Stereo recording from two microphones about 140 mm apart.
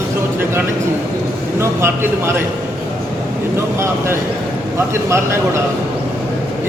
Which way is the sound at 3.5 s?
20° right (ahead or behind).